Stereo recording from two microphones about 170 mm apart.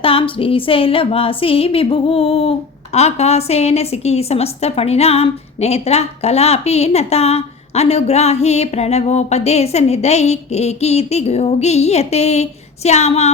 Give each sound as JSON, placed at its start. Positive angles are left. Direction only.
{"t": 0.0, "sound": "a woman's voice", "side_deg": 35}